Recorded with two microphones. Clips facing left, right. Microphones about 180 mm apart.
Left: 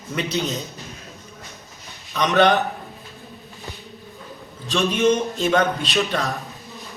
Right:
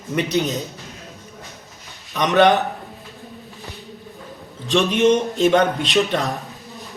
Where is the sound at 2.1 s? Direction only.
20° right (ahead or behind).